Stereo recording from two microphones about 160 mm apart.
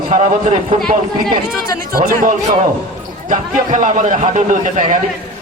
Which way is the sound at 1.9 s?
65° right (ahead or behind).